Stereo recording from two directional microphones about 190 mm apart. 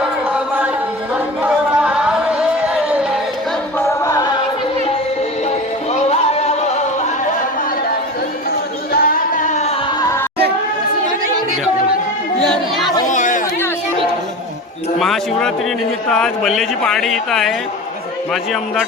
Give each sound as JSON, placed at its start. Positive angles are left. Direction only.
{"t": 0.3, "sound": "a sound", "side_deg": -5}
{"t": 2.4, "sound": "music", "side_deg": -5}
{"t": 3.8, "sound": "music", "side_deg": 15}
{"t": 5.9, "sound": "music", "side_deg": 35}
{"t": 8.9, "sound": "music", "side_deg": 50}
{"t": 10.0, "sound": "music", "side_deg": 15}
{"t": 12.4, "sound": "a sound", "side_deg": 0}
{"t": 13.1, "sound": "chatter", "side_deg": 40}
{"t": 14.9, "sound": "a sound", "side_deg": 0}
{"t": 16.0, "sound": "speech", "side_deg": 5}